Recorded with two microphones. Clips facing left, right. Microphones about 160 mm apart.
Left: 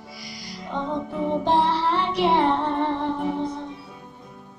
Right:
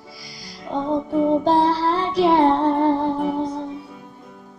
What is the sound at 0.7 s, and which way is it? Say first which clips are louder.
Music: right 7 dB; 35° right (ahead or behind).